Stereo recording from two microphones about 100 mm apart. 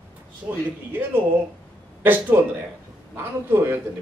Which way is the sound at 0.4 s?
10° right (ahead or behind).